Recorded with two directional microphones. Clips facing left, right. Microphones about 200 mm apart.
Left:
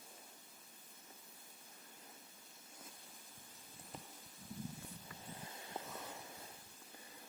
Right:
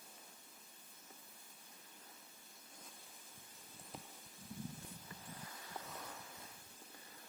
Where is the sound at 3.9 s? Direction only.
Centre (ahead or behind).